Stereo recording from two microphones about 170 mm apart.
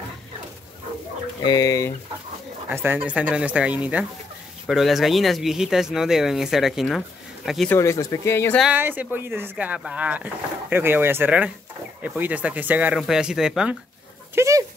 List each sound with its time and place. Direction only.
1.4 s speech: 20° left (ahead or behind)
2.7 s speech: 10° right (ahead or behind)
7.7 s speech: 20° left (ahead or behind)
8.7 s speech: 10° right (ahead or behind)
14.3 s dog: 15° right (ahead or behind)